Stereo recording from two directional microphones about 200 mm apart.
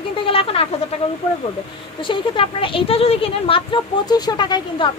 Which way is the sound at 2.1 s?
25° left (ahead or behind).